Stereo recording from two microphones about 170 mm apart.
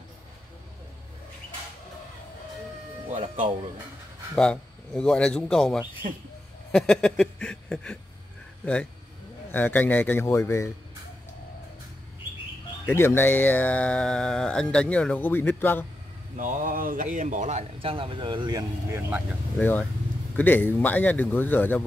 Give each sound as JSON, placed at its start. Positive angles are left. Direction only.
{"t": 3.1, "sound": "speech", "side_deg": -50}
{"t": 4.4, "sound": "speech", "side_deg": 5}
{"t": 9.5, "sound": "speech", "side_deg": 10}
{"t": 12.8, "sound": "speech", "side_deg": 15}
{"t": 16.3, "sound": "speech", "side_deg": -50}
{"t": 19.6, "sound": "speech", "side_deg": 10}